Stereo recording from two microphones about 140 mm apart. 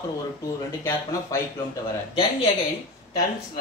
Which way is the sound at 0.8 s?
25° left (ahead or behind).